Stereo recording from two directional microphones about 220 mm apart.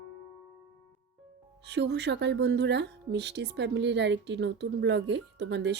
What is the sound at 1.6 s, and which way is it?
Speech, 50° right (ahead or behind).